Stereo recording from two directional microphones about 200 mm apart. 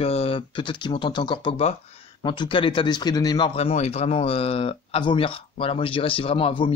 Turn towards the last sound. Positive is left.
turn(degrees=25)  # may be behind; listen again after turning